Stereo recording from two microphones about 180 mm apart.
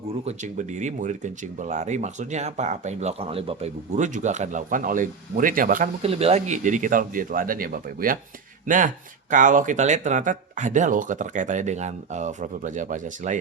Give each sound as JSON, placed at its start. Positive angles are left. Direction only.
{"t": 0.1, "sound": "speech", "side_deg": -40}
{"t": 6.0, "sound": "speech", "side_deg": -35}